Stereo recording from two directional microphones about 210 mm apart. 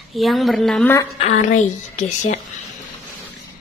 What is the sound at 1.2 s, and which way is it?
A woman's voice, 35° left (ahead or behind).